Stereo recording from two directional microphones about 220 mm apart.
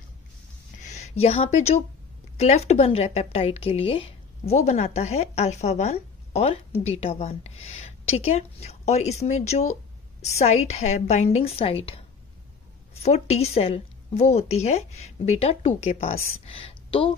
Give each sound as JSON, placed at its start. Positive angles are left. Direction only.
{"t": 0.7, "sound": "speech", "side_deg": 30}